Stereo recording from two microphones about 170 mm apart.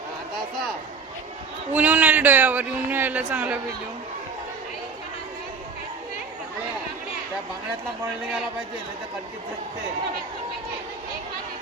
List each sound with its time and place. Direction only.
1.7 s speech: 10° right (ahead or behind)